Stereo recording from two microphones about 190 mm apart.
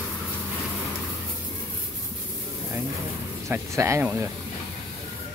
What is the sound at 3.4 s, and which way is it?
Speech, 15° right (ahead or behind).